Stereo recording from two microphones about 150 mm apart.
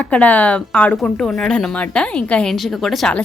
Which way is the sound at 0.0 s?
10° left (ahead or behind).